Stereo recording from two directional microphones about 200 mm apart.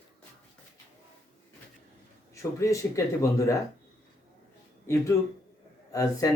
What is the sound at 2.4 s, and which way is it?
Speech, 15° left (ahead or behind).